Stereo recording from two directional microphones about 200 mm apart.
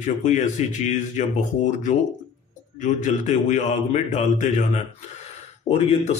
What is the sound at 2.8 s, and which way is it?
Speech, 40° left (ahead or behind).